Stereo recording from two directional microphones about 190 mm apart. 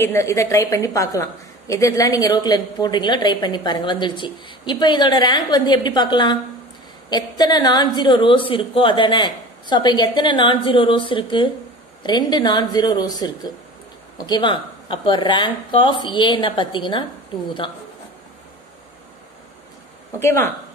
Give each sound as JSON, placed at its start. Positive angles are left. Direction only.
{"t": 0.0, "sound": "a woman's voice", "side_deg": 15}
{"t": 20.2, "sound": "speech", "side_deg": 15}